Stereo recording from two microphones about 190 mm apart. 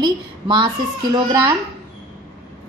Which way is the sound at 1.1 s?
15° right (ahead or behind).